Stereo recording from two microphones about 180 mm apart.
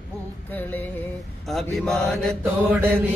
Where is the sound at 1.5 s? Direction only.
Centre (ahead or behind).